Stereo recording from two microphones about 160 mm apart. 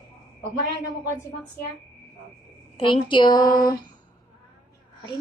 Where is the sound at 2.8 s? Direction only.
30° left (ahead or behind).